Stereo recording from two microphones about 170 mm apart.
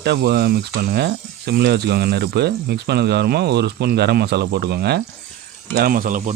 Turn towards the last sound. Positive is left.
turn(degrees=-50)  # may be behind; listen again after turning